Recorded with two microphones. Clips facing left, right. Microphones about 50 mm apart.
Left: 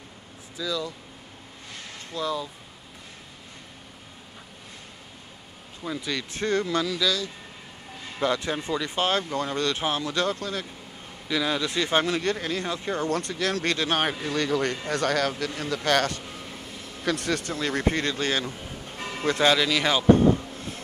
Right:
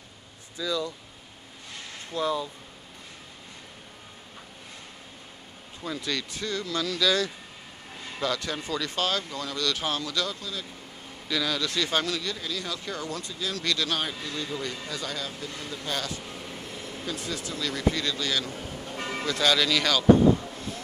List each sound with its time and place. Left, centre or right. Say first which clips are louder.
0.6 s speech: even; centre
2.1 s speech: right 1 dB; centre
5.9 s speech: left 1 dB; centre
6.3 s speech: left 6 dB; left
8.2 s speech: left 4 dB; left
11.2 s speech: left 2 dB; left
12.2 s speech: left 6 dB; left
13.1 s a man's voice: left 7 dB; left
13.6 s speech: left 1 dB; left
14.2 s a man's voice: left 8 dB; left
16.3 s vehicle: even; centre
17.0 s a man's voice: left 8 dB; left
17.6 s speech: right 1 dB; left
19.6 s speech: left 1 dB; left